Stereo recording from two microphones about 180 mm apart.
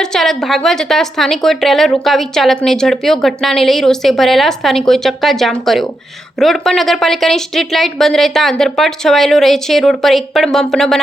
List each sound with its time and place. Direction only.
0.0 s a woman's voice: centre (ahead or behind)